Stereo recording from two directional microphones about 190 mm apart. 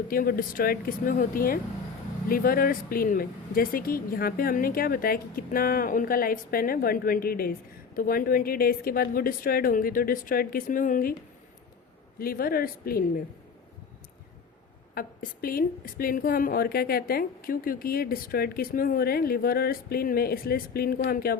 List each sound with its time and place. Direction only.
0.1 s a woman's voice: 50° left (ahead or behind)
12.2 s a woman's voice: 50° left (ahead or behind)
14.9 s a woman's voice: 50° left (ahead or behind)